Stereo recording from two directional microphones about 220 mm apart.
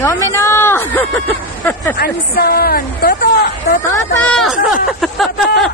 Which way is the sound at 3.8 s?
5° left (ahead or behind).